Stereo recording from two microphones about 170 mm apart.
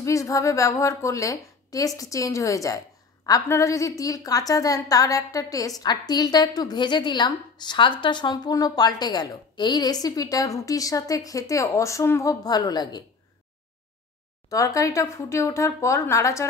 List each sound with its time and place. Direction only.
0.0 s a woman's voice: 20° left (ahead or behind)
14.5 s speech: 20° left (ahead or behind)